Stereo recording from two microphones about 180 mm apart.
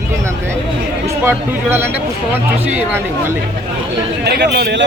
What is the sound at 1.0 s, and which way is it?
Speech, 15° right (ahead or behind).